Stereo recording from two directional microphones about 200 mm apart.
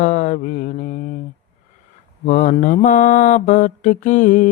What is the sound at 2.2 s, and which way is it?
Mantra, 35° left (ahead or behind).